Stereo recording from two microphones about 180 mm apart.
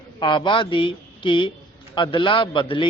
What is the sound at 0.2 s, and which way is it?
Speech, 25° left (ahead or behind).